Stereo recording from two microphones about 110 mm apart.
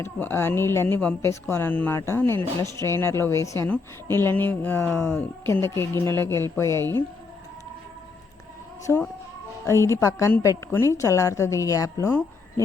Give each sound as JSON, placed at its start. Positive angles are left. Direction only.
{"t": 0.0, "sound": "speech", "side_deg": 20}
{"t": 8.9, "sound": "speech", "side_deg": 15}
{"t": 9.6, "sound": "speech", "side_deg": 25}